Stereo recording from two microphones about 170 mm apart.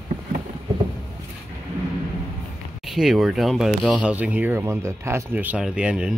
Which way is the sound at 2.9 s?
Centre (ahead or behind).